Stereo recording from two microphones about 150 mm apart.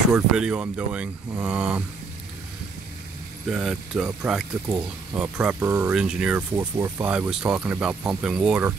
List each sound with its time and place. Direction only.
0.1 s speech: 5° right (ahead or behind)
3.4 s speech: 5° right (ahead or behind)
6.5 s speech: 15° right (ahead or behind)